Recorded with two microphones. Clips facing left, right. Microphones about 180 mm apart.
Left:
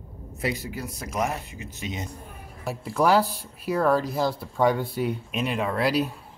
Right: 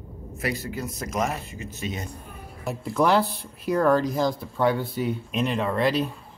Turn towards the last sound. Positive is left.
turn(degrees=5)  # may be behind; listen again after turning